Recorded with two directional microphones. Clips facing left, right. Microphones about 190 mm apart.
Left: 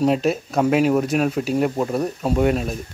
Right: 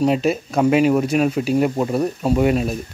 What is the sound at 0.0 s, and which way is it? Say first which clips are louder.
Speech: right 1 dB; centre (ahead or behind).